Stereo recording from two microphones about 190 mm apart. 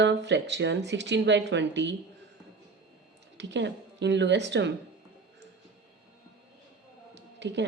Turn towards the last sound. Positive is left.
turn(degrees=-65)  # may be behind; listen again after turning